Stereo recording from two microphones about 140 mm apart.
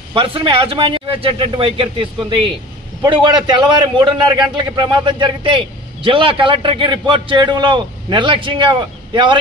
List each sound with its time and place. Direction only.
0.1 s a man's voice: 40° right (ahead or behind)